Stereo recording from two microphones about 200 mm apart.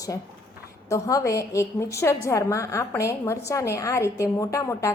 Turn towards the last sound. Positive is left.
turn(degrees=15)  # may be behind; listen again after turning